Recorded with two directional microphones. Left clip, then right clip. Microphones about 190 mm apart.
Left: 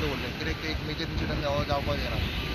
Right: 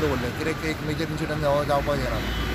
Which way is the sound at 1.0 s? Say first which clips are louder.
Right 5 dB; 20° right (ahead or behind).